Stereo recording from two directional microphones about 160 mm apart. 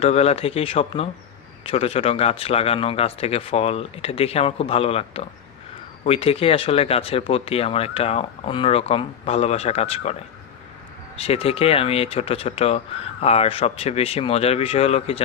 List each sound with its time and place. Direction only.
0.0 s speech: 40° left (ahead or behind)
11.2 s speech: 40° left (ahead or behind)